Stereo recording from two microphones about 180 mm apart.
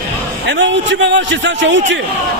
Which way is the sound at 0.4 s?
85° right.